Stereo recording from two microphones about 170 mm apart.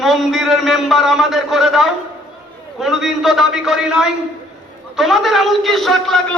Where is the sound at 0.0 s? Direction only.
Centre (ahead or behind).